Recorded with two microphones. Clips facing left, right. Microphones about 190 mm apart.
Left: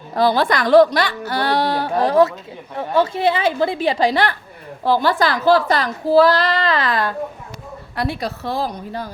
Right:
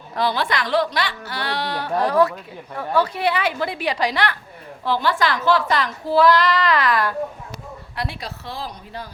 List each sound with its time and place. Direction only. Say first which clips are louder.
0.1 s a woman's voice: left 6 dB; 40° left (ahead or behind)
2.0 s a woman's voice: left 4 dB; 25° left (ahead or behind)
7.9 s speech: left 7 dB; 45° left (ahead or behind)